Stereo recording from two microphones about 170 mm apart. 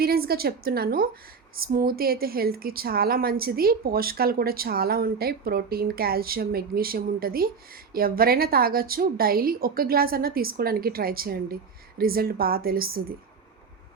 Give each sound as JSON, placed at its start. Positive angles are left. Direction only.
{"t": 0.0, "sound": "speech", "side_deg": -65}